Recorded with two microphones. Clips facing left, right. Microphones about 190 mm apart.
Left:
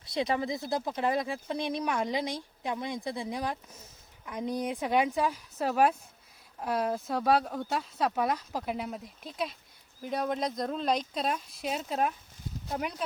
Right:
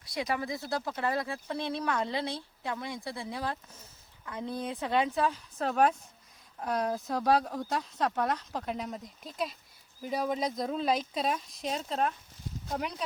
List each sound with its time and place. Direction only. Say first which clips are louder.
0.0 s speech: left 3 dB; 25° left (ahead or behind); by 13.1 s centre (ahead or behind)